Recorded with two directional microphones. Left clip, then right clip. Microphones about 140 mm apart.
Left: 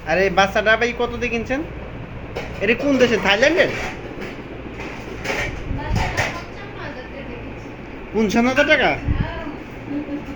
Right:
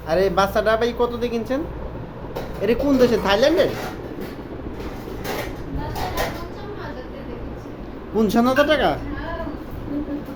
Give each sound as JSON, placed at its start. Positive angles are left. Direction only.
{"t": 0.1, "sound": "speech", "side_deg": -10}
{"t": 8.1, "sound": "speech", "side_deg": -15}